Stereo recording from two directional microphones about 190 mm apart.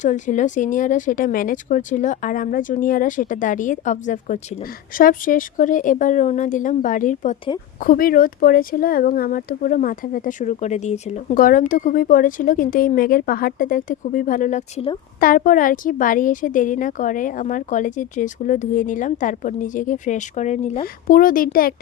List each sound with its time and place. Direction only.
0.0 s speech: 40° left (ahead or behind)